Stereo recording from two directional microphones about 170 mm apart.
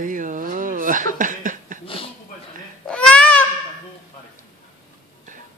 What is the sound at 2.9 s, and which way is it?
Babbling, 5° left (ahead or behind).